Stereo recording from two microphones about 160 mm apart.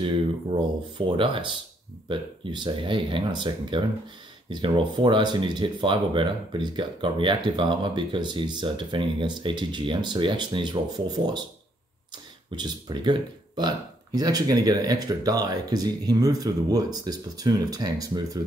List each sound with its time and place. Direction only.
0.0 s speech: 30° right (ahead or behind)
12.5 s speech: 25° right (ahead or behind)